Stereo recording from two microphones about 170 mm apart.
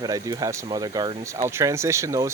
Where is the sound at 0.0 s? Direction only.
20° right (ahead or behind).